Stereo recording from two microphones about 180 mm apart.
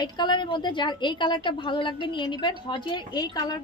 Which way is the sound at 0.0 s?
25° left (ahead or behind).